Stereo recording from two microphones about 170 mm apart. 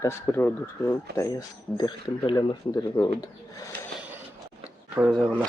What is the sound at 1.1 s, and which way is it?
Speech, 20° left (ahead or behind).